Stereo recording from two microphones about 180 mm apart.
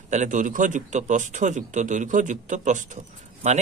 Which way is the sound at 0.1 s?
45° right (ahead or behind).